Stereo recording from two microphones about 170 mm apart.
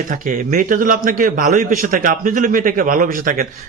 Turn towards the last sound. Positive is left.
turn(degrees=-50)  # may be behind; listen again after turning